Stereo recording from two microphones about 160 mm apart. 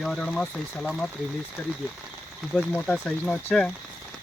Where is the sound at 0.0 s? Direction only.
5° left (ahead or behind).